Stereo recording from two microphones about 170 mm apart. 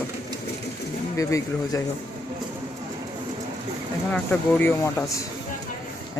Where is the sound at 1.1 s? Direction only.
20° left (ahead or behind).